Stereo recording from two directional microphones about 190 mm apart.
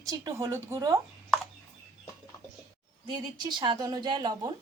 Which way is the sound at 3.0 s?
20° right (ahead or behind).